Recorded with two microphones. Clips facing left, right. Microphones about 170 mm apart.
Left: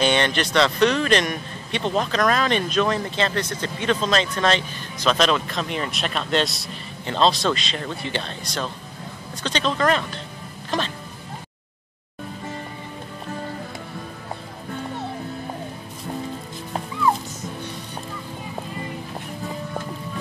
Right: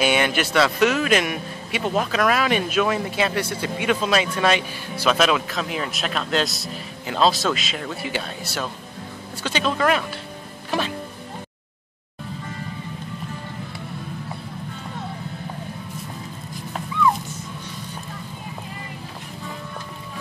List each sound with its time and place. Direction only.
0.0 s a man's voice: 10° right (ahead or behind)
10.7 s music: 10° right (ahead or behind)